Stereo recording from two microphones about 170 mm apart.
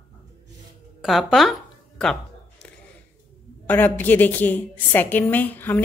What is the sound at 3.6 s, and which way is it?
A woman's voice, 10° left (ahead or behind).